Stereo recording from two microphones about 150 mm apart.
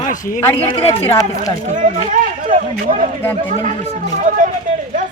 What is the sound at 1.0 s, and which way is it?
Speech, 20° left (ahead or behind).